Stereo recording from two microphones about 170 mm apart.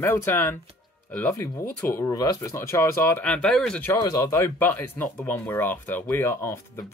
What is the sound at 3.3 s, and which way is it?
Speech, 5° left (ahead or behind).